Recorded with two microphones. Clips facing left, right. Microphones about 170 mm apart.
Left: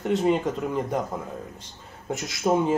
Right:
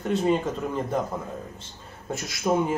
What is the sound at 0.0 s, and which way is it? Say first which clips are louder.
Speech: left 1 dB; 15° left (ahead or behind).